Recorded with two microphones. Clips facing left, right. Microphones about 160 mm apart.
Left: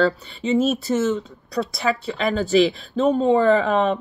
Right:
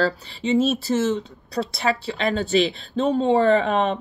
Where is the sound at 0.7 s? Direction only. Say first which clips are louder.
Left 1 dB; 30° right (ahead or behind).